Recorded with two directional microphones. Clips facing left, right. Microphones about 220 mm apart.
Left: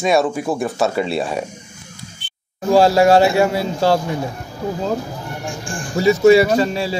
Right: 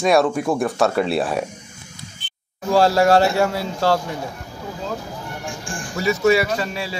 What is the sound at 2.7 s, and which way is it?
A man's voice, 20° left (ahead or behind).